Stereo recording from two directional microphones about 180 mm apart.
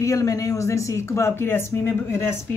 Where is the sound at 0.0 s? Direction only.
15° left (ahead or behind).